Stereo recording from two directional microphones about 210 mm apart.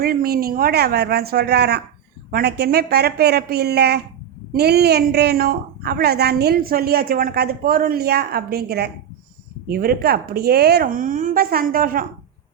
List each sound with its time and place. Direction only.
0.0 s a woman's voice: 45° right (ahead or behind)